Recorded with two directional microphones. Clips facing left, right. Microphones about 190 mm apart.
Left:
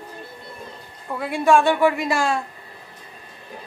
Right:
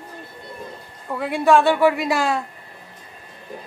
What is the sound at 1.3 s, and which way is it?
Speech, 15° left (ahead or behind).